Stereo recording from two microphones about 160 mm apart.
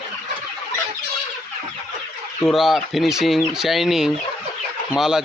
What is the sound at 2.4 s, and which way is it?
Speech, centre (ahead or behind).